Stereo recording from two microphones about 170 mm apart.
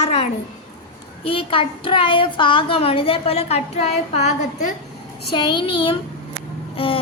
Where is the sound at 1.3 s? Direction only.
30° left (ahead or behind).